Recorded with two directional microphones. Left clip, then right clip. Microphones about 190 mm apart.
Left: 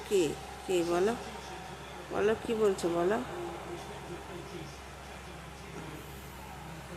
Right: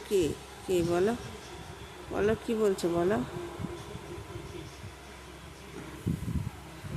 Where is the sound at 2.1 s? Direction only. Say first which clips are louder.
Right 1 dB; 30° right (ahead or behind).